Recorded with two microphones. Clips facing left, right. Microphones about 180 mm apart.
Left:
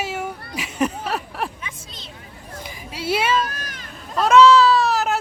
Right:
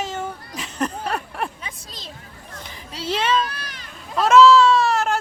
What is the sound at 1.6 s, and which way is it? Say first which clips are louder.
Speech: even; 35° right (ahead or behind).